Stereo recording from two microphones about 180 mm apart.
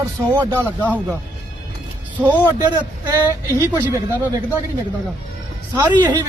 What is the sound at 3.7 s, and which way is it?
Speech, 10° right (ahead or behind).